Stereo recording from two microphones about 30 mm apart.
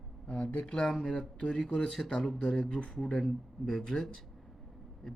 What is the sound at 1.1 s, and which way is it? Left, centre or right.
Speech, left.